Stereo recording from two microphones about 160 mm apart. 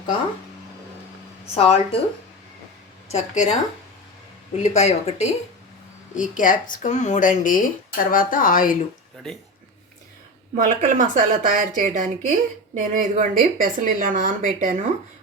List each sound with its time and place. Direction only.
1.5 s speech: 35° left (ahead or behind)
3.1 s speech: 45° left (ahead or behind)
4.6 s speech: 45° left (ahead or behind)
6.1 s speech: 55° left (ahead or behind)
10.5 s a woman's voice: 55° right (ahead or behind)